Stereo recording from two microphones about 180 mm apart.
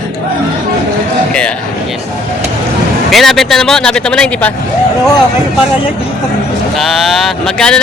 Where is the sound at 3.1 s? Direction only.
Centre (ahead or behind).